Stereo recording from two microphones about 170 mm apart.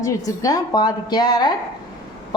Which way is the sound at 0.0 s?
20° left (ahead or behind).